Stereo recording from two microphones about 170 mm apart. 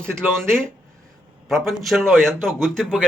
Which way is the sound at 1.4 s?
Centre (ahead or behind).